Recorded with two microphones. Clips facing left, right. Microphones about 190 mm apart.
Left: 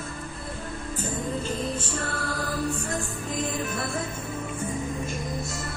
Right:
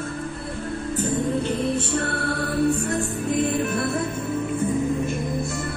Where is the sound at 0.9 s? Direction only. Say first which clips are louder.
Right 7 dB; 65° right (ahead or behind).